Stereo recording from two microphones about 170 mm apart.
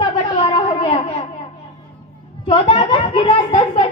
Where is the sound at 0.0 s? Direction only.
30° left (ahead or behind).